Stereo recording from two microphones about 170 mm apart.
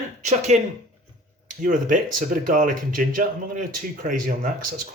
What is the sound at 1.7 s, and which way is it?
Speech, 50° right (ahead or behind).